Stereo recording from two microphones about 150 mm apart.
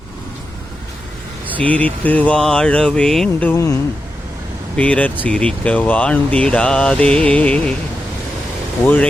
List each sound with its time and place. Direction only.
1.5 s speech: 10° left (ahead or behind)
3.5 s speech: 20° left (ahead or behind)
4.8 s speech: 10° left (ahead or behind)